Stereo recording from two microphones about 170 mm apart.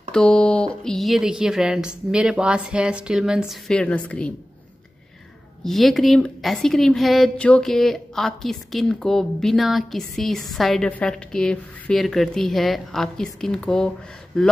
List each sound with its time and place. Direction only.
0.1 s a sound: 5° left (ahead or behind)
0.8 s a woman's voice: centre (ahead or behind)
5.6 s a woman's voice: centre (ahead or behind)